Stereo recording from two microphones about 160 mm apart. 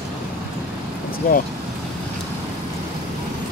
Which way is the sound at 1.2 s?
55° left (ahead or behind).